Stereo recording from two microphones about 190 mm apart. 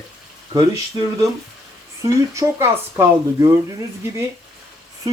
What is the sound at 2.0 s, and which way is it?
Speech, 15° right (ahead or behind).